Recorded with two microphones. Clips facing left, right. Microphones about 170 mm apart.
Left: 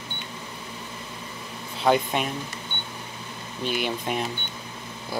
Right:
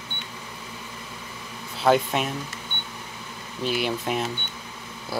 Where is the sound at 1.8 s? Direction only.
Centre (ahead or behind).